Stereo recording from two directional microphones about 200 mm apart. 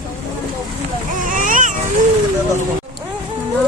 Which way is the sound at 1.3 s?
40° right (ahead or behind).